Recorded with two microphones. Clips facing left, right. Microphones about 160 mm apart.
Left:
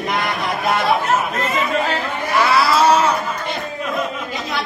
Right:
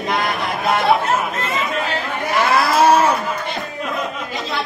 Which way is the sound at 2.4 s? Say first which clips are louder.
Even; 50° right (ahead or behind).